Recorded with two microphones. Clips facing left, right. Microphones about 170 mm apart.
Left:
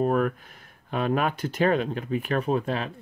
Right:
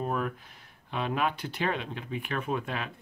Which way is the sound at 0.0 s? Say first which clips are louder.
Left 8 dB; 55° left (ahead or behind).